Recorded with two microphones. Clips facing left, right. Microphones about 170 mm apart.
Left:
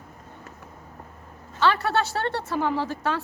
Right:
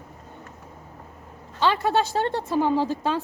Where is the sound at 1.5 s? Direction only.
20° right (ahead or behind).